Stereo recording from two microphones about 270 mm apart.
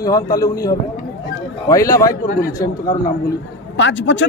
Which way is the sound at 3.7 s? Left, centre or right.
Left.